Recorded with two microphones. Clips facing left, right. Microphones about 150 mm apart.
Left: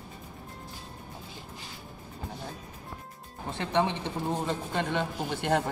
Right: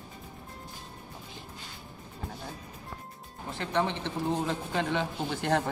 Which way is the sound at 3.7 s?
15° left (ahead or behind).